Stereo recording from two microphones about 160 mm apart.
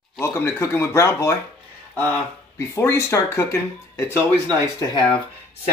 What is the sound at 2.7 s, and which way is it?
Speech, 20° left (ahead or behind).